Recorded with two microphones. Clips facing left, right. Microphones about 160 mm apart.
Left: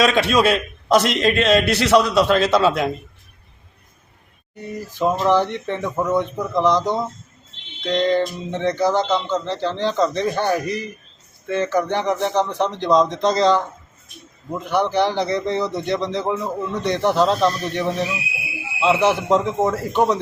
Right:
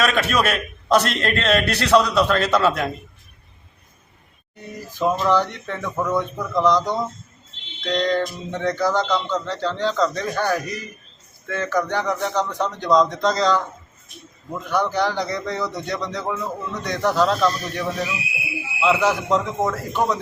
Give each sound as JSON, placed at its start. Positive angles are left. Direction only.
{"t": 0.1, "sound": "a man's voice", "side_deg": 15}
{"t": 4.9, "sound": "a man's voice", "side_deg": 20}